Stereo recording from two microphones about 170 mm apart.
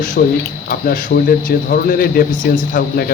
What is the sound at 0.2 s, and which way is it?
Speech, 60° left (ahead or behind).